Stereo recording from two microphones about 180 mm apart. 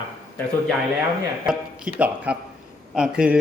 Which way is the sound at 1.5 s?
5° right (ahead or behind).